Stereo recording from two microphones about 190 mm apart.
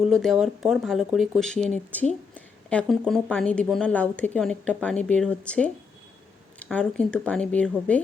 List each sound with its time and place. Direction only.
0.0 s speech: centre (ahead or behind)